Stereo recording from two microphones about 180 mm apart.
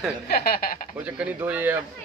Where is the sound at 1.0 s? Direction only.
5° right (ahead or behind).